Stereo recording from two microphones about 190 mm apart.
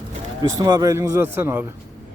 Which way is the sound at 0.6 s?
20° right (ahead or behind).